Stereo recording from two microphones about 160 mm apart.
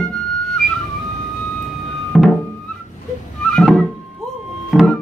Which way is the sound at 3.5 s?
5° left (ahead or behind).